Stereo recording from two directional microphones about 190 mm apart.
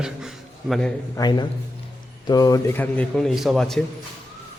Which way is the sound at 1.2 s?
20° left (ahead or behind).